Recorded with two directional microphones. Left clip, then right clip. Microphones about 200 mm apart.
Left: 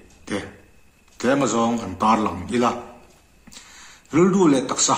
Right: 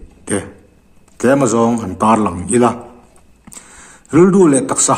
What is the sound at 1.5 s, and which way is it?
A man's voice, 50° right (ahead or behind).